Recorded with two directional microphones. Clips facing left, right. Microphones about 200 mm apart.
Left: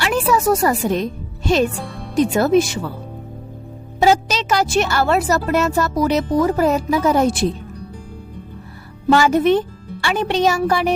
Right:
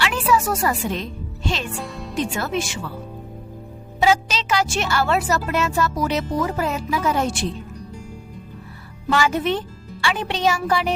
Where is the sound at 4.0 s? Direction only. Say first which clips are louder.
Left 4 dB; 45° left (ahead or behind).